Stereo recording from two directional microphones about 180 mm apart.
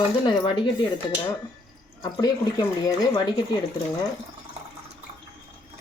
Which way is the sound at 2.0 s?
20° left (ahead or behind).